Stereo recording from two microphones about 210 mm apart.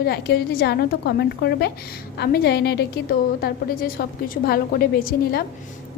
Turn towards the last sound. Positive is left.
turn(degrees=45)  # may be behind; listen again after turning